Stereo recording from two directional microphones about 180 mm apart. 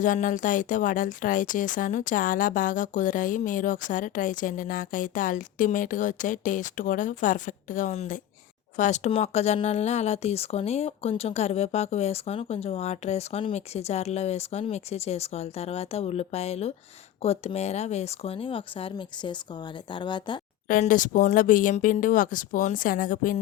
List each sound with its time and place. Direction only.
0.0 s speech: 45° left (ahead or behind); by 20.4 s 25° left (ahead or behind)
20.7 s speech: 45° left (ahead or behind)